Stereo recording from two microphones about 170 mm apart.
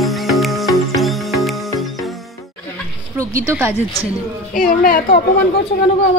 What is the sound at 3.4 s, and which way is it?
Speech, 15° right (ahead or behind).